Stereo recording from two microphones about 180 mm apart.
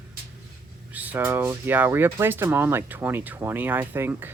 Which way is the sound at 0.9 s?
10° right (ahead or behind).